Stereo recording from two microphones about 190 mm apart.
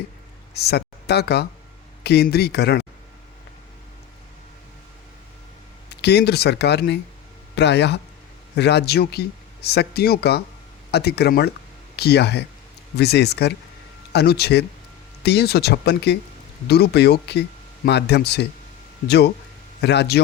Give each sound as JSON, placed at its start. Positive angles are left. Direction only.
{"t": 0.5, "sound": "speech", "side_deg": 60}
{"t": 6.0, "sound": "speech", "side_deg": 60}